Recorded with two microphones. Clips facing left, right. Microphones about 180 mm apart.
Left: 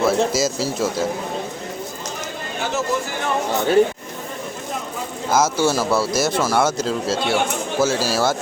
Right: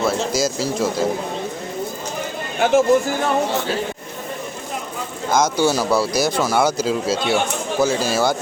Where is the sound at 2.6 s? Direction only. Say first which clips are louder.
Right 9 dB; 50° right (ahead or behind).